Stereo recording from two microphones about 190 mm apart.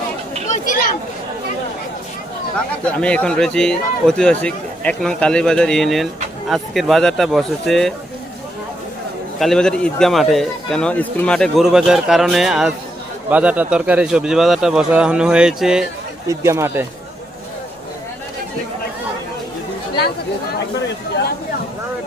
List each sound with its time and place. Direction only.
0.4 s chatter: 40° left (ahead or behind)
2.8 s speech: 5° left (ahead or behind)
9.4 s speech: 5° left (ahead or behind)
16.3 s speech: 15° right (ahead or behind)